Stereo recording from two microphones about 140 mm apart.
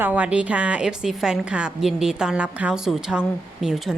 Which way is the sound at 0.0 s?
10° right (ahead or behind).